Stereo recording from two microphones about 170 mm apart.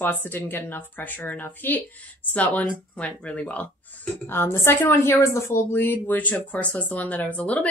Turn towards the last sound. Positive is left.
turn(degrees=10)  # may be behind; listen again after turning